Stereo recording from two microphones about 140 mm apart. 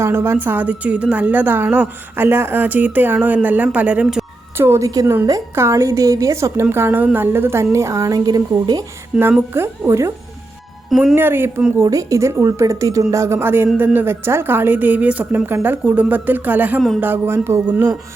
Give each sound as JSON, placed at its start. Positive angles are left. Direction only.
{"t": 0.0, "sound": "a woman's voice", "side_deg": -15}
{"t": 4.5, "sound": "a woman's voice", "side_deg": -20}
{"t": 9.1, "sound": "a woman's voice", "side_deg": -5}
{"t": 9.6, "sound": "a woman's voice", "side_deg": -20}
{"t": 10.8, "sound": "speech", "side_deg": 0}
{"t": 11.1, "sound": "a woman's voice", "side_deg": -15}